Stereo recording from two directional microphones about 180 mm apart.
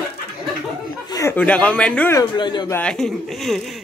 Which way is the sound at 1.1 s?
15° left (ahead or behind).